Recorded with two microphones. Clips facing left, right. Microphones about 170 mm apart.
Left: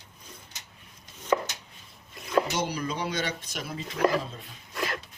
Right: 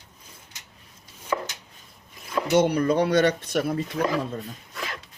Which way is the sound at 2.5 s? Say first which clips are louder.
Right 11 dB; 60° right (ahead or behind).